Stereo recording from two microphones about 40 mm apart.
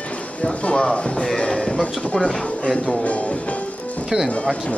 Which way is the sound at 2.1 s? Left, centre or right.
Centre.